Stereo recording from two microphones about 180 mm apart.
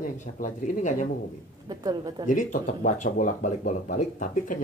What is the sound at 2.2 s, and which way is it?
Speech, 45° left (ahead or behind).